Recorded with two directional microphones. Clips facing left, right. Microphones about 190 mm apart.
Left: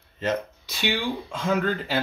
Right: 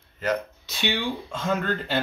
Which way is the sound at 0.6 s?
10° left (ahead or behind).